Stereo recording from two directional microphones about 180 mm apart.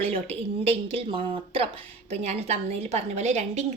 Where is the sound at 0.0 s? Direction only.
35° right (ahead or behind).